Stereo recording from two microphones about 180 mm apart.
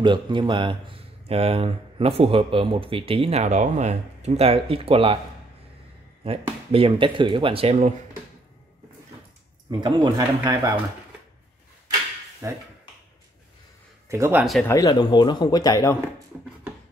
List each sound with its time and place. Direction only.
0.0 s speech: 25° right (ahead or behind)
6.2 s speech: 30° right (ahead or behind)
9.7 s speech: 25° right (ahead or behind)
12.4 s speech: 15° right (ahead or behind)
14.0 s speech: 15° right (ahead or behind)
14.4 s speech: centre (ahead or behind)
14.7 s speech: 20° left (ahead or behind)
16.3 s speech: 5° right (ahead or behind)